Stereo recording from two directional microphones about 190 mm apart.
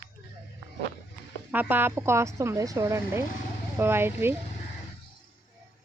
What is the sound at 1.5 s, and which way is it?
Speech, 10° right (ahead or behind).